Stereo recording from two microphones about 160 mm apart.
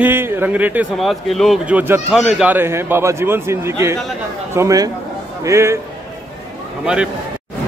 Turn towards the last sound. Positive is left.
turn(degrees=-15)  # may be behind; listen again after turning